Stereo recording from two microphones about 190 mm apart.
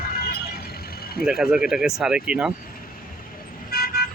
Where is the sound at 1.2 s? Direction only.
Centre (ahead or behind).